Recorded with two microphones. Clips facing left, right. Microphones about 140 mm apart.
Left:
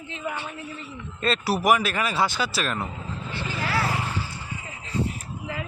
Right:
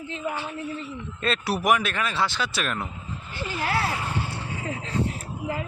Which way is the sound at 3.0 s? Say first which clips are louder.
Left 3 dB; 90° left.